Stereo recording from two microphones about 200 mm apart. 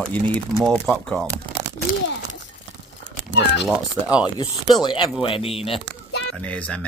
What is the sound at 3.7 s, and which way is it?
Speech, 5° right (ahead or behind).